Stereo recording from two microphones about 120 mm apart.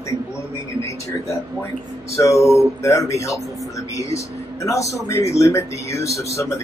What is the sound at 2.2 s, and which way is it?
Speech, 25° left (ahead or behind).